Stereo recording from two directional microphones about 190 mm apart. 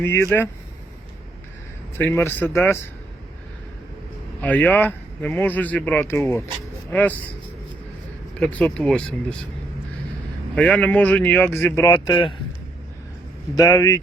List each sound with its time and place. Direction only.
0.0 s speech: 15° left (ahead or behind)
2.0 s speech: 10° left (ahead or behind)
4.4 s speech: 10° left (ahead or behind)
8.4 s speech: 5° left (ahead or behind)
10.5 s speech: 5° left (ahead or behind)
11.9 s a man's voice: 25° left (ahead or behind)
13.6 s a man's voice: 20° left (ahead or behind)